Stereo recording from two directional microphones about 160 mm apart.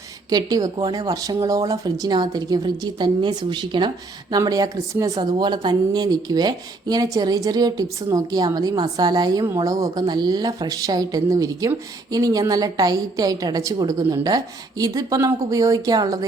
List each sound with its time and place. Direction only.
0.3 s a woman's voice: 25° right (ahead or behind)